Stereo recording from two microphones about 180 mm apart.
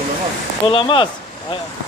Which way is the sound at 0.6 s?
25° left (ahead or behind).